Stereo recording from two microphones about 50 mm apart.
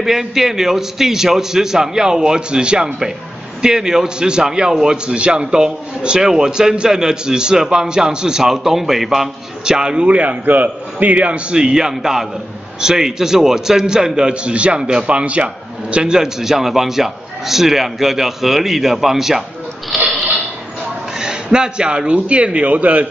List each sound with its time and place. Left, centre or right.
0.0 s a man's voice: centre
21.2 s a man's voice: centre